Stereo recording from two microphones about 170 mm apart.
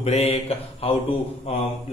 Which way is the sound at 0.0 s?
35° left (ahead or behind).